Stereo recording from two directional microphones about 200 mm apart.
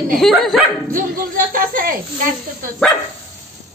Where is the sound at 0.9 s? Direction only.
45° right (ahead or behind).